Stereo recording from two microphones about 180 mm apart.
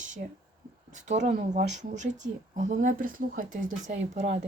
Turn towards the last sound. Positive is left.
turn(degrees=-40)  # may be behind; listen again after turning